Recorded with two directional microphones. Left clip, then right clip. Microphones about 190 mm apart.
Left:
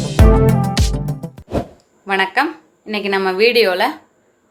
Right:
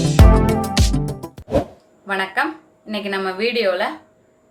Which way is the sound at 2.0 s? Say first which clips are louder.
Left 4 dB; 35° left (ahead or behind).